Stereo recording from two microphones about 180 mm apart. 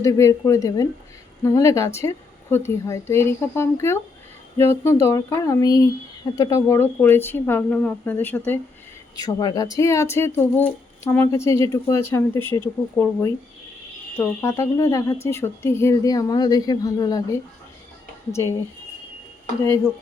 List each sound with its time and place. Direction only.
0.0 s speech: 15° left (ahead or behind)
9.1 s speech: 20° left (ahead or behind)
18.3 s speech: 15° left (ahead or behind)